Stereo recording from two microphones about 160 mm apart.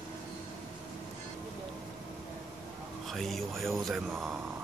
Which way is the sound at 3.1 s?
Centre (ahead or behind).